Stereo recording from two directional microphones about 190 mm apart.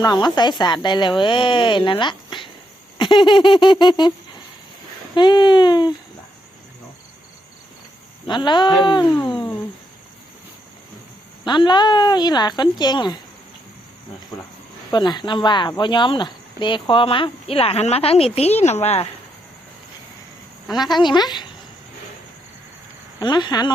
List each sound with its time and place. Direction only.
0.0 s a woman's voice: 20° left (ahead or behind)
5.1 s a woman's voice: 25° left (ahead or behind)
8.3 s a woman's voice: 25° left (ahead or behind)
11.4 s a woman's voice: 25° left (ahead or behind)
14.3 s a woman's voice: 20° left (ahead or behind); by 19.0 s 35° left (ahead or behind)
20.9 s a woman's voice: 25° left (ahead or behind)
23.2 s a woman's voice: 20° left (ahead or behind)